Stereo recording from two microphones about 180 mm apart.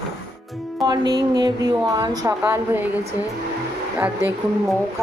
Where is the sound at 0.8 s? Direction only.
20° right (ahead or behind).